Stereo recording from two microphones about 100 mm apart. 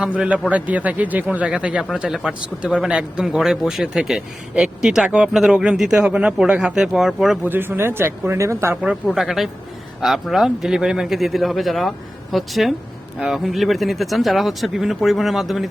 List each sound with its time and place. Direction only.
0.0 s a man's voice: 10° right (ahead or behind)
7.4 s speech: 20° right (ahead or behind)
9.0 s speech: 5° right (ahead or behind)